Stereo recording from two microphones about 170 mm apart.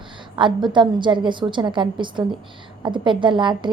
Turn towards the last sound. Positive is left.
turn(degrees=-30)  # may be behind; listen again after turning